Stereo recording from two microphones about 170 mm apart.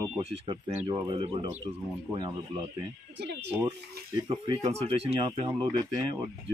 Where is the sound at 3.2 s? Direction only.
80° right.